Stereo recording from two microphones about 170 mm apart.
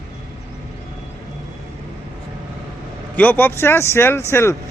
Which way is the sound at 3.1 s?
10° left (ahead or behind).